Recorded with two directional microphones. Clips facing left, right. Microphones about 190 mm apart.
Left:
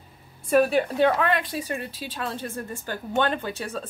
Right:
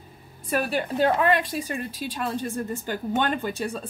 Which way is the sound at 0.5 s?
Centre (ahead or behind).